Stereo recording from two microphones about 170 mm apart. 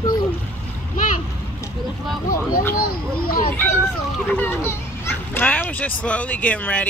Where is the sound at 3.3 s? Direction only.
60° left (ahead or behind).